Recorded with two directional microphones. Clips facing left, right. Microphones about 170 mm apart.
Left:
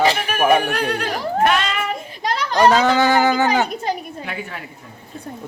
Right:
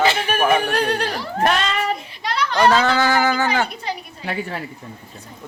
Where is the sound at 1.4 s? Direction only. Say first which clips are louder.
Even; 35° right (ahead or behind).